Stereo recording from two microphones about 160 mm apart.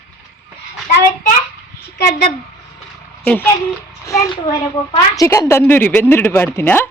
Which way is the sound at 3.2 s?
10° left (ahead or behind).